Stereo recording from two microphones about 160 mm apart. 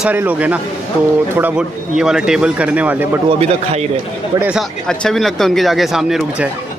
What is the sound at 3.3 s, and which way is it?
Speech, 40° right (ahead or behind).